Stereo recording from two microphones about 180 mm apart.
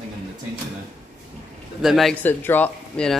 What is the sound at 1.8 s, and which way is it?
Speech, centre (ahead or behind).